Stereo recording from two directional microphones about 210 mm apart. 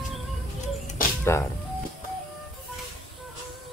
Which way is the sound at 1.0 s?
40° left (ahead or behind).